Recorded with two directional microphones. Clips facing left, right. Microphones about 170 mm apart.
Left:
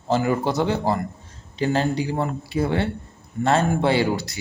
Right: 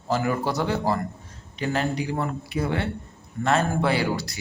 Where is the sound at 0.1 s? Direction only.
25° left (ahead or behind).